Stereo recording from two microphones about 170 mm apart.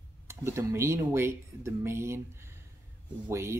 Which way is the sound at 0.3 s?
15° right (ahead or behind).